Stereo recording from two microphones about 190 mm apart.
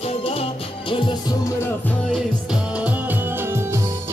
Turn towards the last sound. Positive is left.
turn(degrees=-10)  # may be behind; listen again after turning